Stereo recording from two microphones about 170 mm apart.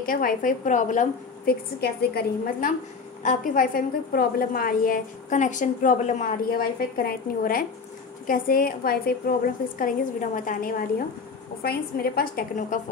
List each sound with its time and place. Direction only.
0.0 s a woman's voice: 55° left (ahead or behind)
3.2 s a woman's voice: 50° left (ahead or behind)